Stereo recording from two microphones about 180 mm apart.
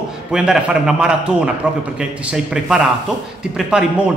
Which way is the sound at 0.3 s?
5° right (ahead or behind).